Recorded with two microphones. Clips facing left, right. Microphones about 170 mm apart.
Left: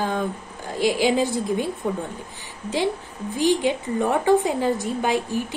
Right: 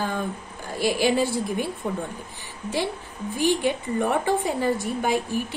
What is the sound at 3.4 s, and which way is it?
A woman's voice, 15° left (ahead or behind).